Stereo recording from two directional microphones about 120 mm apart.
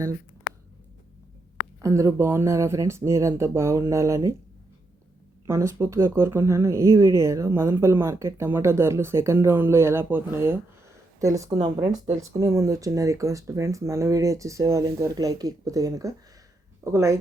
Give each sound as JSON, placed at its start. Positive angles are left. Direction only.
{"t": 1.8, "sound": "speech", "side_deg": -25}
{"t": 5.5, "sound": "speech", "side_deg": -25}
{"t": 12.0, "sound": "speech", "side_deg": -80}
{"t": 12.4, "sound": "speech", "side_deg": -25}